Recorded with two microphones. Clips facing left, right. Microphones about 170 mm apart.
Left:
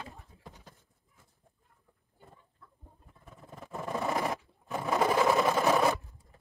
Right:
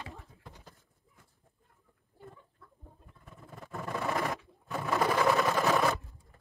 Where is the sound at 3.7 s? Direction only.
20° left (ahead or behind).